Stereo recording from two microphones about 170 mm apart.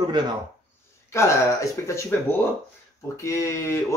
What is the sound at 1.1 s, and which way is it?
Speech, 15° left (ahead or behind).